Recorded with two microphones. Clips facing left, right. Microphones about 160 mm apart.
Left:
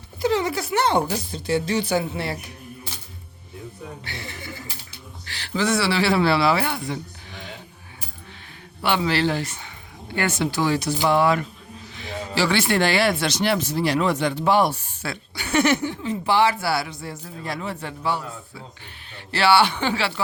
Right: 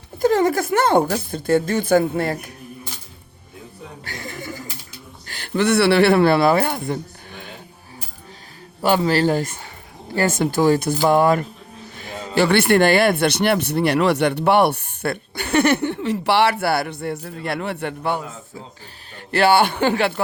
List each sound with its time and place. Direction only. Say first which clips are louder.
0.2 s speech: right 5 dB; 50° right (ahead or behind)
4.0 s a sound: right 4 dB; 45° right (ahead or behind)
5.2 s speech: right 4 dB; 50° right (ahead or behind)
8.8 s speech: right 4 dB; 40° right (ahead or behind)